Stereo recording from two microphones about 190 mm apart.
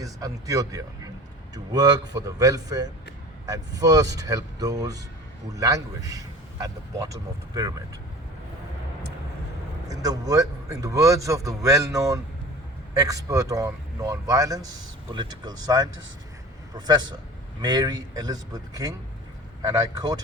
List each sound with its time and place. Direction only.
0.0 s speech: 20° right (ahead or behind)
9.9 s speech: 20° right (ahead or behind)